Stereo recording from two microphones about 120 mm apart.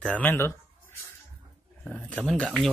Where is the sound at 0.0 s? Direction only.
10° left (ahead or behind).